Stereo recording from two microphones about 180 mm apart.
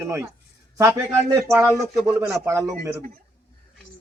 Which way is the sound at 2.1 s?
15° right (ahead or behind).